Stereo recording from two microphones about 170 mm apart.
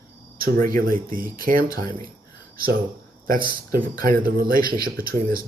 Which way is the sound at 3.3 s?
60° right (ahead or behind).